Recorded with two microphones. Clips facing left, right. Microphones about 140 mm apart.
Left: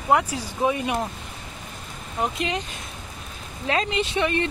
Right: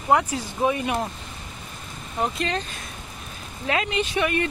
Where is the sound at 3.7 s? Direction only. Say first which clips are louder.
Even; 30° left (ahead or behind).